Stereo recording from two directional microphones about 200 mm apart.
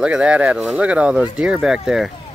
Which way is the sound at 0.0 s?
5° right (ahead or behind).